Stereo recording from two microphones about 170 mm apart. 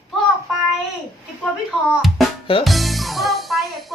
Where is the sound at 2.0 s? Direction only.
Centre (ahead or behind).